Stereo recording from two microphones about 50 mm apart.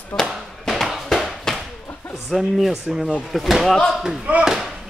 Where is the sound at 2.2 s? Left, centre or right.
Centre.